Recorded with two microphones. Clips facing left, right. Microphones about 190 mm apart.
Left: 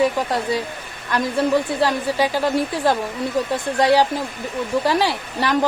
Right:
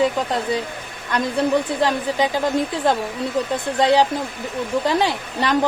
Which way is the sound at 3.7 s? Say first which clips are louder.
Even; 20° right (ahead or behind).